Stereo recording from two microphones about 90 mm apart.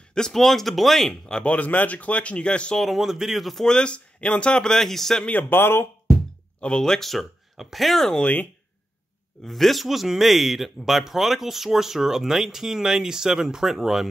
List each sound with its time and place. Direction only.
0.1 s speech: 5° left (ahead or behind)
2.8 s speech: centre (ahead or behind)
5.3 s speech: 25° left (ahead or behind)
6.6 s speech: 10° left (ahead or behind)
9.4 s speech: centre (ahead or behind)